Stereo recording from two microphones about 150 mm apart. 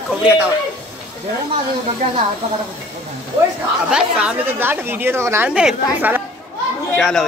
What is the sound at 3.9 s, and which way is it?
A woman's voice, 5° right (ahead or behind).